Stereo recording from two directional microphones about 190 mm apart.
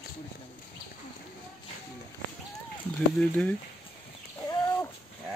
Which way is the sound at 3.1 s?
5° left (ahead or behind).